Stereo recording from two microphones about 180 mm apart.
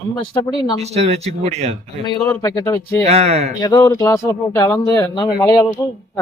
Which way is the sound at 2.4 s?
20° left (ahead or behind).